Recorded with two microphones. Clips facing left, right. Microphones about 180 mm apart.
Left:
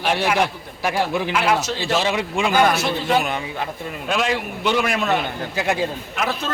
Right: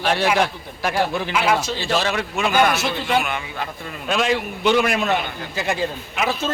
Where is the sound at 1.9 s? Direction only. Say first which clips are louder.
Left 1 dB; 20° left (ahead or behind).